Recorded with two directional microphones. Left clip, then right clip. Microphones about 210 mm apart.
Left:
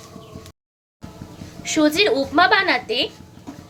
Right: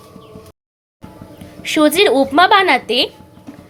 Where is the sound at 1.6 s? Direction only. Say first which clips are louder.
Right 5 dB; 25° right (ahead or behind).